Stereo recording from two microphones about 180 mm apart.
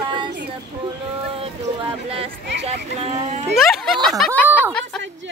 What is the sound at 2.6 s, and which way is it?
Speech, 35° right (ahead or behind).